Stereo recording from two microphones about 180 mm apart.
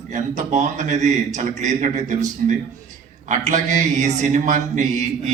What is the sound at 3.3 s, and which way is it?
A man's voice, 40° right (ahead or behind).